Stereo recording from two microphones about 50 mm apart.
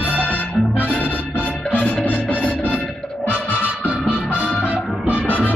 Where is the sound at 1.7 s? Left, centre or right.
Left.